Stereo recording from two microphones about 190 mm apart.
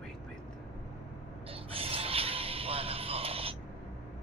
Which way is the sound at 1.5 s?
30° right (ahead or behind).